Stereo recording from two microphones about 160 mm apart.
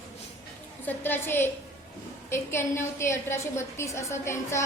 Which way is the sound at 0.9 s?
10° left (ahead or behind).